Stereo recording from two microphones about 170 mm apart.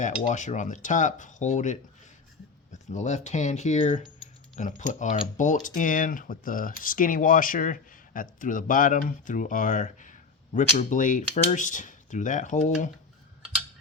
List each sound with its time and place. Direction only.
0.3 s speech: 45° left (ahead or behind)